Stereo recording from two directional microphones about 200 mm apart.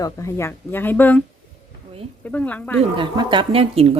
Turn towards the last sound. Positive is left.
turn(degrees=-30)  # may be behind; listen again after turning